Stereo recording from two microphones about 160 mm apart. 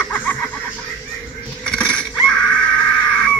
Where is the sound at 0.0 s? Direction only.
5° left (ahead or behind).